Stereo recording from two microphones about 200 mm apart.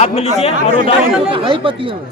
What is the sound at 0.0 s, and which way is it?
Speech, 30° left (ahead or behind).